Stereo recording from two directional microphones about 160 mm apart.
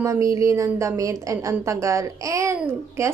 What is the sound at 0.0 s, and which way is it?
A woman's voice, 20° right (ahead or behind).